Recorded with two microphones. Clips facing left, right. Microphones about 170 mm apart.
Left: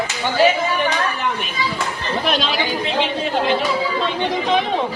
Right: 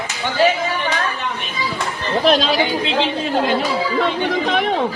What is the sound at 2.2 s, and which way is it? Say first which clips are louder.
Speech: right 6 dB; 40° right (ahead or behind).